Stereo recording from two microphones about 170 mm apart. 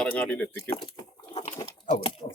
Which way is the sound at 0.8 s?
35° left (ahead or behind).